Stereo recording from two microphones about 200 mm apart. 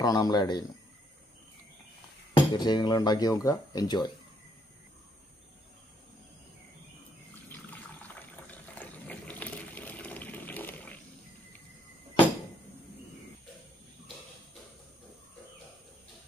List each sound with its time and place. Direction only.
0.0 s speech: 20° left (ahead or behind)
2.3 s speech: 20° left (ahead or behind)
7.4 s water: 10° left (ahead or behind)